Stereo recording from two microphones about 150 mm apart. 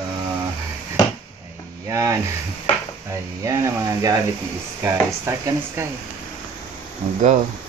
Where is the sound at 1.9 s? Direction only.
20° right (ahead or behind).